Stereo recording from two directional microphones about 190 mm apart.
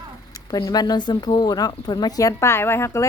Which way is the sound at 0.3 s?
20° left (ahead or behind).